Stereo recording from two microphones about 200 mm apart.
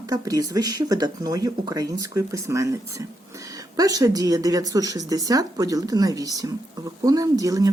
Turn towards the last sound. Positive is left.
turn(degrees=-15)  # may be behind; listen again after turning